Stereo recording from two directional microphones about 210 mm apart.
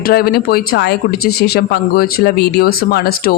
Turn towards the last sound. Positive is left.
turn(degrees=45)  # may be behind; listen again after turning